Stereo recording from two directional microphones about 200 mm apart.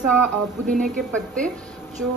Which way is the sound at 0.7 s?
40° right (ahead or behind).